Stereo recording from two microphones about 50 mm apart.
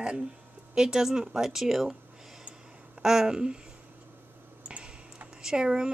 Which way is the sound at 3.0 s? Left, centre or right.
Centre.